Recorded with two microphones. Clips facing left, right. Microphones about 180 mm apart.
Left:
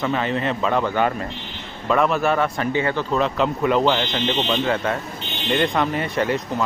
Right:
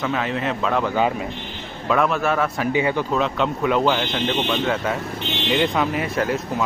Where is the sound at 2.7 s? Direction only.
15° right (ahead or behind).